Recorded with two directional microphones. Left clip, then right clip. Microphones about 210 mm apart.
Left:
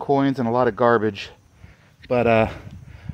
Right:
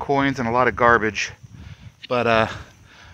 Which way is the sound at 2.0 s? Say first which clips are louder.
Left 1 dB; 35° left (ahead or behind).